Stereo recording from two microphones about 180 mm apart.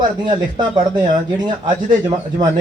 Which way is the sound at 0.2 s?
25° right (ahead or behind).